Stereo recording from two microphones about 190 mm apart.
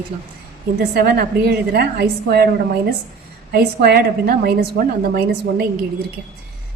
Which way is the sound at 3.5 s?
55° right (ahead or behind).